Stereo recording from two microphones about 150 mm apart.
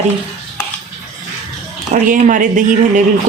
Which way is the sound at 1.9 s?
60° right (ahead or behind).